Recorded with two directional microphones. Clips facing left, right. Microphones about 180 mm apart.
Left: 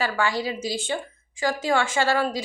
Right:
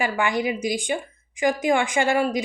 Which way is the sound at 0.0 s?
15° right (ahead or behind).